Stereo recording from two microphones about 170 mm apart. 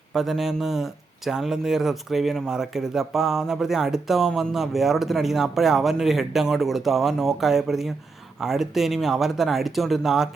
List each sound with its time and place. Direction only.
0.1 s speech: centre (ahead or behind)